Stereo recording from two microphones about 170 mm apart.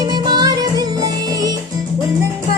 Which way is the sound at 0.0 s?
25° right (ahead or behind).